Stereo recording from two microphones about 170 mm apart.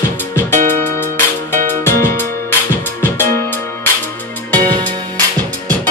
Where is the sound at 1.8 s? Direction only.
15° left (ahead or behind).